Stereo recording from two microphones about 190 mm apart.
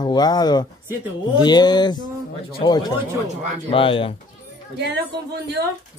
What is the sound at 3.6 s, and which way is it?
Speech, 30° left (ahead or behind).